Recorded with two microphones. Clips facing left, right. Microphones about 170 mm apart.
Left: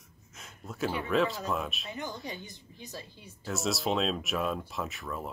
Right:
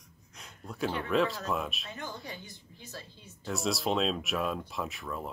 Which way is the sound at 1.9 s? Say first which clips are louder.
Left 3 dB; 15° left (ahead or behind).